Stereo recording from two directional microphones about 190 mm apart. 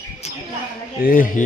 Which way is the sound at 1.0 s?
45° left (ahead or behind).